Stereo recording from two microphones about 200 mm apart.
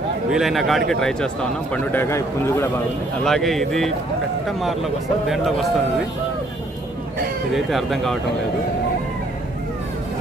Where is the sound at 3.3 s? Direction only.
Centre (ahead or behind).